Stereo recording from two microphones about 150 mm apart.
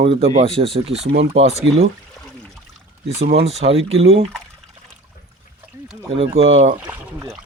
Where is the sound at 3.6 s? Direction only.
40° right (ahead or behind).